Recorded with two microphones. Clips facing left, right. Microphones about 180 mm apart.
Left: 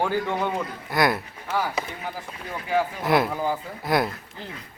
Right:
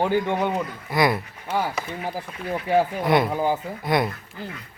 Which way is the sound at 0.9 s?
Centre (ahead or behind).